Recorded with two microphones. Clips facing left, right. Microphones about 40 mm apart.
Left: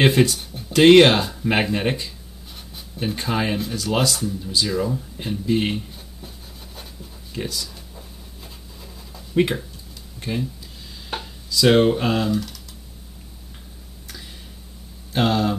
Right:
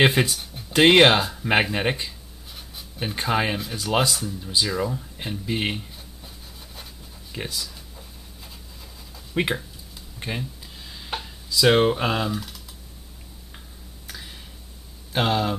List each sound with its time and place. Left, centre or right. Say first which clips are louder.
0.0 s speech: left 2 dB; centre
0.4 s music: left 3 dB; centre
0.7 s speech: left 3 dB; centre
6.2 s rub: left 3 dB; centre
7.3 s speech: left 3 dB; centre
9.3 s speech: left 5 dB; centre
11.1 s speech: left 1 dB; centre
15.1 s speech: left 2 dB; centre